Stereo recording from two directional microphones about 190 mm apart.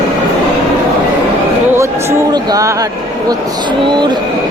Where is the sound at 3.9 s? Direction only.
25° right (ahead or behind).